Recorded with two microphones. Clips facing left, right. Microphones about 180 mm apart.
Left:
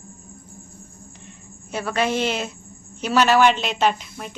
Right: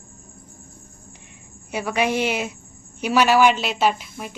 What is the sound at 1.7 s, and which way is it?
A woman's voice, 15° right (ahead or behind).